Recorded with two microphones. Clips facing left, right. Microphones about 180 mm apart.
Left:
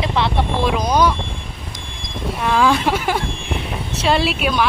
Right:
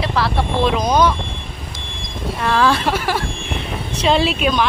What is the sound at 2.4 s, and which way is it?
Speech, 15° left (ahead or behind).